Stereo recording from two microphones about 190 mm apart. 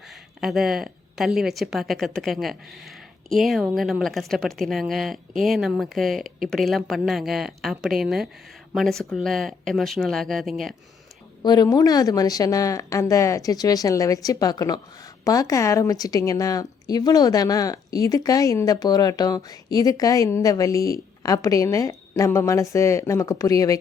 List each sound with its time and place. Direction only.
0.3 s a woman's voice: centre (ahead or behind)
11.4 s speech: 20° left (ahead or behind)